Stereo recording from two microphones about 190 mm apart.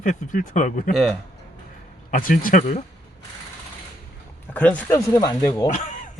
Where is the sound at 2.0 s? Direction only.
45° left (ahead or behind).